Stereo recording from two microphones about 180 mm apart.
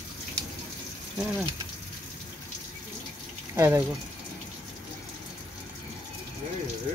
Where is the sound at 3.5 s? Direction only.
15° right (ahead or behind).